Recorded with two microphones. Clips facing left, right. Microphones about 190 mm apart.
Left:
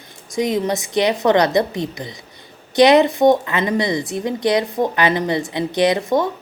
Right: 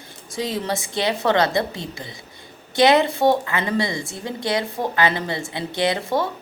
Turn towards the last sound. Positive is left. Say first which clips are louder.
# left 5 dB
turn(degrees=20)  # may be behind; listen again after turning